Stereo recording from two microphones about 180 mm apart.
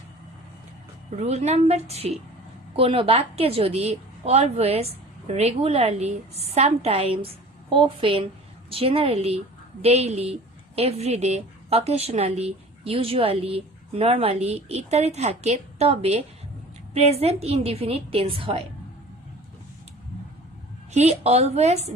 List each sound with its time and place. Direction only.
1.2 s a woman's voice: 35° right (ahead or behind)
20.9 s a woman's voice: 35° right (ahead or behind)